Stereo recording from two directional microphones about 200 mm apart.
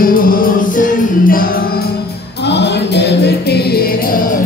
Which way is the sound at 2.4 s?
60° left (ahead or behind).